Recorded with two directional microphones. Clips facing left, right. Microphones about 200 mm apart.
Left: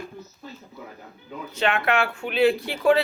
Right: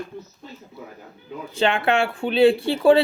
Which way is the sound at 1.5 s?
30° right (ahead or behind).